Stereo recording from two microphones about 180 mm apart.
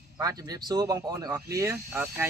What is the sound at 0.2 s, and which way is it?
Speech, 20° right (ahead or behind).